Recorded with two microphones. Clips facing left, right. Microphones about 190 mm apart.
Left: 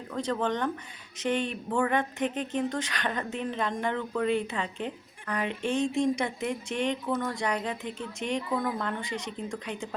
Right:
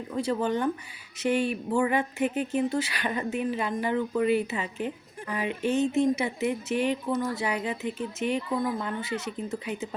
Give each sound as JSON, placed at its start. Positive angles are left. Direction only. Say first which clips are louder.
{"t": 0.1, "sound": "speech", "louder": "right 2 dB", "side_deg": -10}